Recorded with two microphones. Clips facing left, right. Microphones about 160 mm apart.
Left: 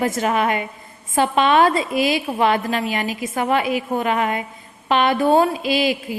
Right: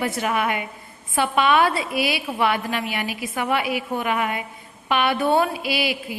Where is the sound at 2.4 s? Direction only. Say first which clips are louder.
Left 3 dB; 40° left (ahead or behind).